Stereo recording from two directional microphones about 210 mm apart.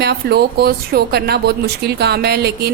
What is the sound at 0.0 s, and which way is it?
Speech, 50° right (ahead or behind).